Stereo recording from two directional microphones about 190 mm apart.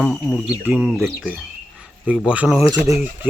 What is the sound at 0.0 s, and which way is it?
Speech, centre (ahead or behind).